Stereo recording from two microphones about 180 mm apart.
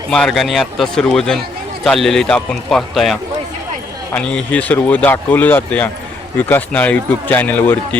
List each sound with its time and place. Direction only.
0.1 s a man's voice: 5° left (ahead or behind)